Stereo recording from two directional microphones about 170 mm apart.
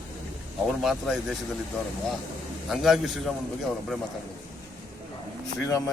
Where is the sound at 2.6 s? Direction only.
Centre (ahead or behind).